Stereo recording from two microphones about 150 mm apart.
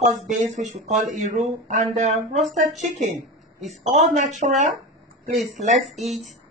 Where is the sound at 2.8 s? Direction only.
50° right (ahead or behind).